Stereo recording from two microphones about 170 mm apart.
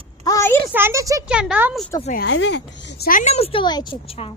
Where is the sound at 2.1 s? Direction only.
90° left.